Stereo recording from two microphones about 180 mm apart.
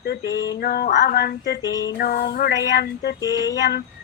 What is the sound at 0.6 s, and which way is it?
Speech, 55° left (ahead or behind).